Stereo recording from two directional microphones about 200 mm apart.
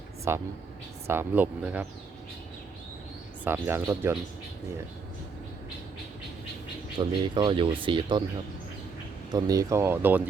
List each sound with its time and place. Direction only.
0.3 s speech: 15° right (ahead or behind)
3.4 s speech: 10° right (ahead or behind)
7.0 s speech: 20° right (ahead or behind)
9.3 s speech: 20° right (ahead or behind)